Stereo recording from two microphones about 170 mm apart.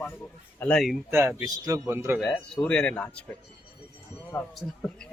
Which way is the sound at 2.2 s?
Centre (ahead or behind).